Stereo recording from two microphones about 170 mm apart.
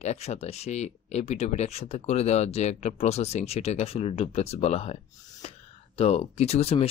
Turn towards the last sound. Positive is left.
turn(degrees=35)  # may be behind; listen again after turning